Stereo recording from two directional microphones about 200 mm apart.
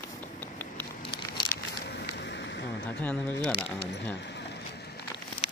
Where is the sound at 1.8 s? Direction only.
55° left (ahead or behind).